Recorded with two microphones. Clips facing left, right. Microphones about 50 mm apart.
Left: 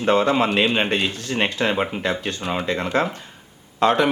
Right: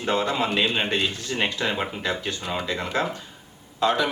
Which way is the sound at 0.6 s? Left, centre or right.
Left.